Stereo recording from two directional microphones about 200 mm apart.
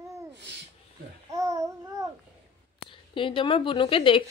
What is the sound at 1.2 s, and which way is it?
Babbling, 15° right (ahead or behind).